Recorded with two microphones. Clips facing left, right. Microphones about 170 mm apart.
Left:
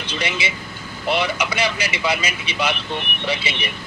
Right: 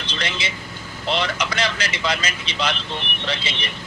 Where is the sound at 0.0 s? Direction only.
10° left (ahead or behind).